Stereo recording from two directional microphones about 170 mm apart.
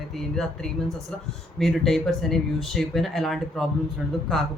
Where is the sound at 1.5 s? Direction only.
Centre (ahead or behind).